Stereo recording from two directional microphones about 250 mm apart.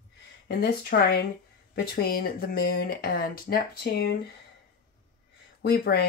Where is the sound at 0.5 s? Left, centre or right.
Left.